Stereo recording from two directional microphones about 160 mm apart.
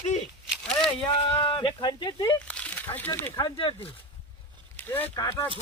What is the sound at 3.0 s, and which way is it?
Speech, 10° left (ahead or behind).